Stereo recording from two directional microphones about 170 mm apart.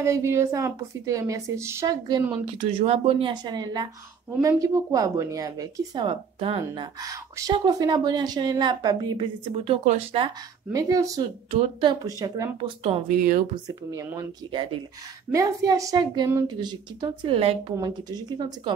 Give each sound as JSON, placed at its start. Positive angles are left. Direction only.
{"t": 0.0, "sound": "a woman's voice", "side_deg": -15}
{"t": 10.7, "sound": "speech", "side_deg": -20}
{"t": 11.5, "sound": "speech", "side_deg": -30}
{"t": 13.1, "sound": "speech", "side_deg": -50}
{"t": 13.7, "sound": "speech", "side_deg": -20}
{"t": 15.3, "sound": "speech", "side_deg": -20}
{"t": 17.7, "sound": "speech", "side_deg": -25}